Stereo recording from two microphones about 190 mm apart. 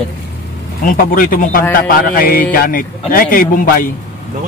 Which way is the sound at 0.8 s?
45° left (ahead or behind).